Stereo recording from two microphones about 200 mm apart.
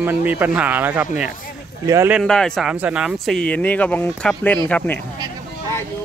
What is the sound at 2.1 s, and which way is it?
Speech, centre (ahead or behind).